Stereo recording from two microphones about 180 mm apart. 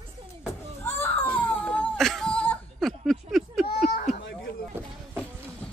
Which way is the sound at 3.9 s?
45° left (ahead or behind).